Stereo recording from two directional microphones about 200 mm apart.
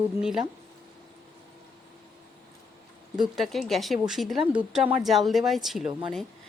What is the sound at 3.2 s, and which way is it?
A woman's voice, centre (ahead or behind).